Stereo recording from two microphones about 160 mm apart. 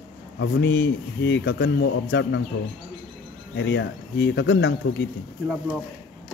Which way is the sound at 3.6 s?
90° left.